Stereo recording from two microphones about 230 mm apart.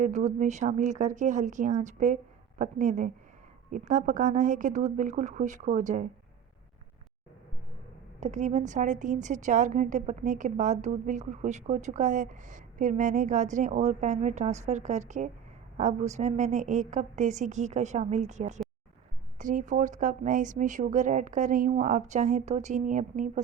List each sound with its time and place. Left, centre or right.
0.0 s a woman's voice: right
8.2 s a woman's voice: right